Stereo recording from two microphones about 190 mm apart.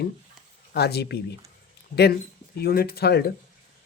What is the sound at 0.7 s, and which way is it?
Speech, 60° left (ahead or behind).